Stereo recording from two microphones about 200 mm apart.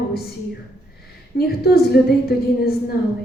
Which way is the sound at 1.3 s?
50° left (ahead or behind).